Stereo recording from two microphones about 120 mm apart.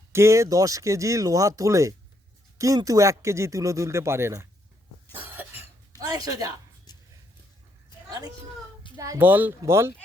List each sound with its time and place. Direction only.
0.1 s speech: 25° right (ahead or behind)
5.1 s cough: 15° right (ahead or behind)
6.0 s speech: 30° right (ahead or behind)
6.9 s a sound: 35° left (ahead or behind)
9.0 s speech: 25° right (ahead or behind)
9.2 s speech: 15° right (ahead or behind)